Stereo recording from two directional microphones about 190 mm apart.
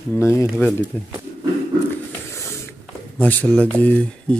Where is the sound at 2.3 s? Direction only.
15° left (ahead or behind).